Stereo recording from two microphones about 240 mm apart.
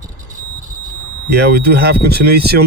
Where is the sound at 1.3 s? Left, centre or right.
Right.